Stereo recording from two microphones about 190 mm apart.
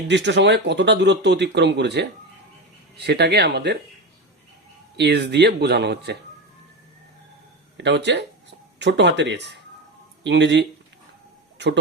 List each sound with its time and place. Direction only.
0.1 s speech: 65° right (ahead or behind)
4.9 s speech: 65° right (ahead or behind)
7.8 s speech: 65° right (ahead or behind)